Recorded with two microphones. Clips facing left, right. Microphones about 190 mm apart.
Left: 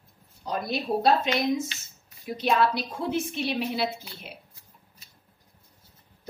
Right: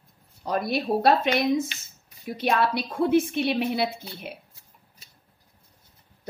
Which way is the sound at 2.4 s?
60° right (ahead or behind).